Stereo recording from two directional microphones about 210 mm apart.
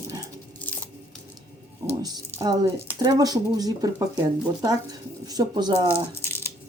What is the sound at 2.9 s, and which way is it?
Speech, 20° right (ahead or behind).